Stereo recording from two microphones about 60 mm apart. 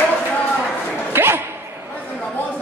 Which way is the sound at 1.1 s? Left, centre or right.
Right.